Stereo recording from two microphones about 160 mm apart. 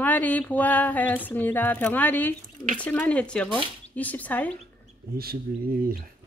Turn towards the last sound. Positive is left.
turn(degrees=-70)  # may be behind; listen again after turning